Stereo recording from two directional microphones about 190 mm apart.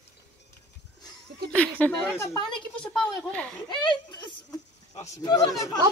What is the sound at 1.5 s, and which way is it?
A woman's voice, 10° left (ahead or behind).